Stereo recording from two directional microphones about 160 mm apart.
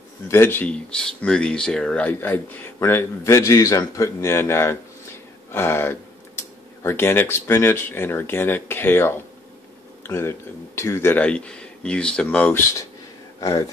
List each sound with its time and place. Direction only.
0.3 s speech: 15° left (ahead or behind)